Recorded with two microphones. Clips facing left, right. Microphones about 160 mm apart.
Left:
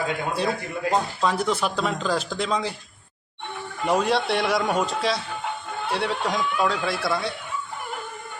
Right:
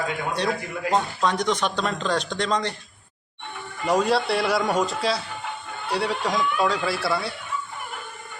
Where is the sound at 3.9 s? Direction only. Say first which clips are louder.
Right 1 dB; centre (ahead or behind).